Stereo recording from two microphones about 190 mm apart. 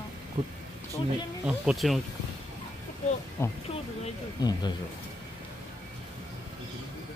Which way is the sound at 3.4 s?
15° left (ahead or behind).